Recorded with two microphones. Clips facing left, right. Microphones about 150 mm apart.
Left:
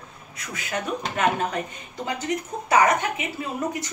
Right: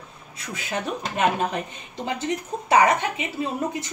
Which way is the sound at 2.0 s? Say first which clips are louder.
Even; 25° right (ahead or behind).